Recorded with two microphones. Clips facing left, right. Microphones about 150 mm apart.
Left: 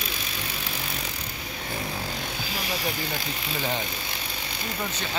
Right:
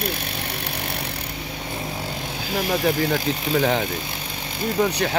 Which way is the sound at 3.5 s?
75° right (ahead or behind).